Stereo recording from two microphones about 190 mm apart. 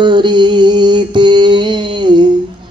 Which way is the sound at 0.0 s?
25° right (ahead or behind).